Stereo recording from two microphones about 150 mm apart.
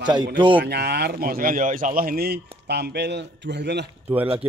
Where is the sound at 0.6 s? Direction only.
90° right.